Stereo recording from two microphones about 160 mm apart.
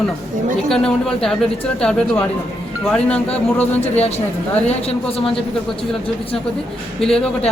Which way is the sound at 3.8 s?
40° left (ahead or behind).